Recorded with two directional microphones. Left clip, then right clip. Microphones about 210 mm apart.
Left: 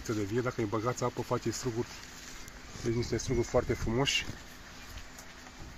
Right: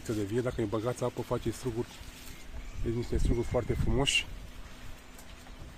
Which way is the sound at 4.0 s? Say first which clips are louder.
Right 2 dB; 15° right (ahead or behind).